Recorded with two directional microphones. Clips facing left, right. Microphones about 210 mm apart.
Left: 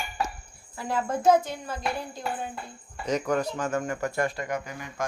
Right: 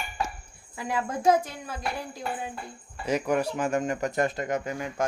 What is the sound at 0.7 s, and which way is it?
Speech, 10° right (ahead or behind).